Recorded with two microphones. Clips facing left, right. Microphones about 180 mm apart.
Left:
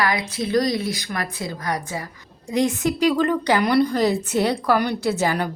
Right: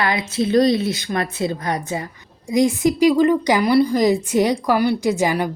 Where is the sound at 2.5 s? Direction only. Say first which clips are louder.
Right 4 dB; 10° right (ahead or behind).